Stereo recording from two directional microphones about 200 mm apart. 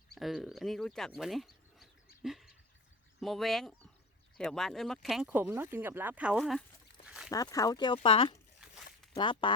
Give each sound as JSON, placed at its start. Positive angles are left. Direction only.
{"t": 0.1, "sound": "speech", "side_deg": 0}
{"t": 2.2, "sound": "dog", "side_deg": 0}
{"t": 3.2, "sound": "speech", "side_deg": 0}
{"t": 7.0, "sound": "a sound", "side_deg": -5}
{"t": 7.3, "sound": "speech", "side_deg": 15}